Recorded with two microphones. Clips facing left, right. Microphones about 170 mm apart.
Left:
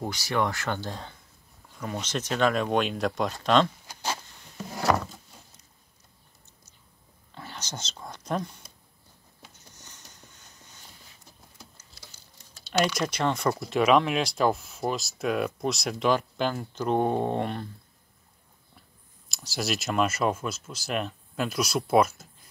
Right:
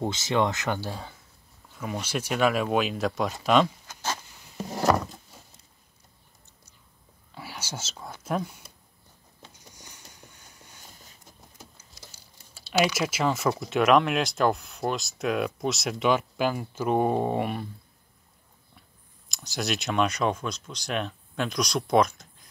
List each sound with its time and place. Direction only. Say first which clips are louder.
0.0 s speech: right 3 dB; 20° right (ahead or behind)
0.7 s speech: right 1 dB; 5° right (ahead or behind)
3.8 s a sound: even; 10° left (ahead or behind)
7.3 s whispering: right 1 dB; 10° right (ahead or behind)
9.5 s a sound: right 2 dB; 10° right (ahead or behind)
12.1 s speech: right 1 dB; 10° right (ahead or behind)
19.2 s speech: even; centre (ahead or behind)